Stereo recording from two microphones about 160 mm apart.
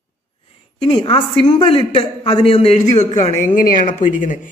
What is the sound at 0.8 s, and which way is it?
A man's voice, 35° left (ahead or behind).